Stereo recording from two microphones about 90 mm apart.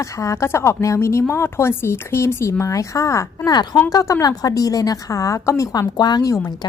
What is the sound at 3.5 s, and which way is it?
A woman's voice, 45° left (ahead or behind).